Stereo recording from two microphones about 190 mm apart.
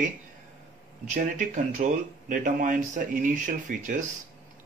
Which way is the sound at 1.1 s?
40° right (ahead or behind).